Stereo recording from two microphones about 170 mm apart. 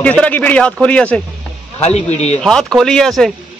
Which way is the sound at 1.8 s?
40° left (ahead or behind).